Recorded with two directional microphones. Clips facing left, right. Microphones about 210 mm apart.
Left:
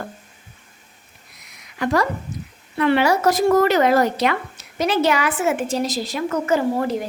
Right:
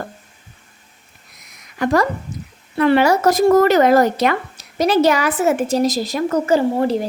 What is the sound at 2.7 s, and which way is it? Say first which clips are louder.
A woman's voice: right 3 dB; 40° right (ahead or behind).